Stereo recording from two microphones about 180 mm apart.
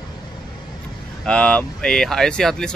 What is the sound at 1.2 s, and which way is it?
Speech, 5° left (ahead or behind).